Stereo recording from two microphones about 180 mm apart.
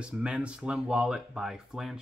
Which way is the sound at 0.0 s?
5° right (ahead or behind).